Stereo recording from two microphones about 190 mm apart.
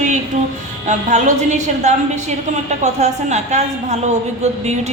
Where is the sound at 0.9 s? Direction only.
40° right (ahead or behind).